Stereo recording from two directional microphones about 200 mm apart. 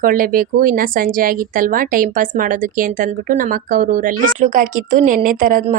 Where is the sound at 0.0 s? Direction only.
45° right (ahead or behind).